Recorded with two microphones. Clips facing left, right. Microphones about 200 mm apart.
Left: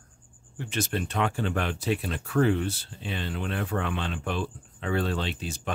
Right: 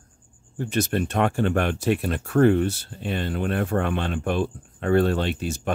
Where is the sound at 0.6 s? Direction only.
40° right (ahead or behind).